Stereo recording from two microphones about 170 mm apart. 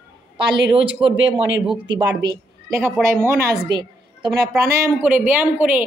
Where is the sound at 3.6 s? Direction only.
25° right (ahead or behind).